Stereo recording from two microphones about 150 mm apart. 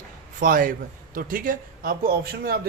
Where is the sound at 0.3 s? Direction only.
65° right (ahead or behind).